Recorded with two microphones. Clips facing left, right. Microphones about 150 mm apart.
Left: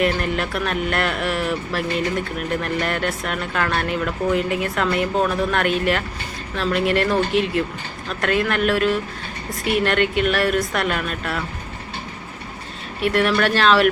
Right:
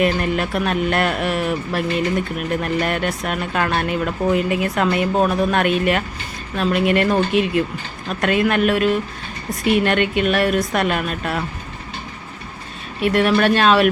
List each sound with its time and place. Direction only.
0.0 s speech: 20° right (ahead or behind)
13.0 s speech: 20° right (ahead or behind)